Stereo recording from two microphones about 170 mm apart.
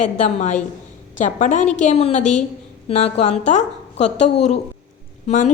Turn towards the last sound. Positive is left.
turn(degrees=45)  # may be behind; listen again after turning